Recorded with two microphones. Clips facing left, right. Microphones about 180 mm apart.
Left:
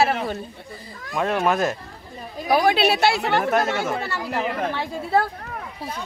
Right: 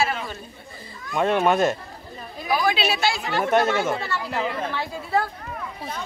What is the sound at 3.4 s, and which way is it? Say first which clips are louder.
Speech: right 1 dB; centre (ahead or behind).